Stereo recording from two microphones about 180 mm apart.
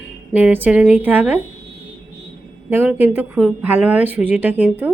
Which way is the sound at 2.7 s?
10° right (ahead or behind).